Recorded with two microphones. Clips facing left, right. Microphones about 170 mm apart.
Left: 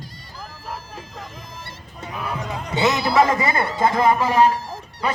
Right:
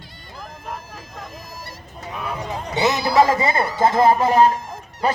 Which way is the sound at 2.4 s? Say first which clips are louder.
Even; 25° right (ahead or behind).